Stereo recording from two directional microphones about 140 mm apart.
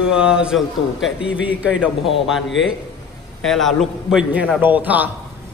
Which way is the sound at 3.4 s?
Centre (ahead or behind).